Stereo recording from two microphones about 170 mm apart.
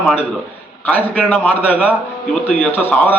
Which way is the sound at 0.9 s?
10° left (ahead or behind).